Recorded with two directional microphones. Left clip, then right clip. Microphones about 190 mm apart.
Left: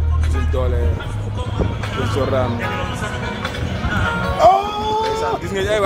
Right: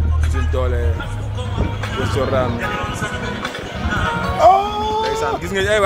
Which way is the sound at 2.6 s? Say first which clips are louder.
Right 1 dB; 50° right (ahead or behind).